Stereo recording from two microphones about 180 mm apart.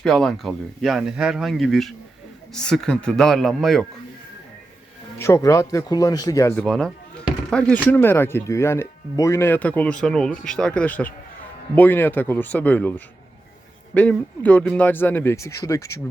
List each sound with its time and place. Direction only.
0.0 s speech: centre (ahead or behind)
5.2 s speech: 15° left (ahead or behind)
6.7 s speech: 5° left (ahead or behind)